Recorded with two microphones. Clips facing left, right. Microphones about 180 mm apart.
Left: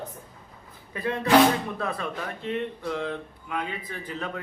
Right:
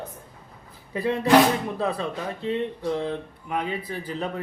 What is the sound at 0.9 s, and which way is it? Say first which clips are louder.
Speech: right 2 dB; 30° right (ahead or behind).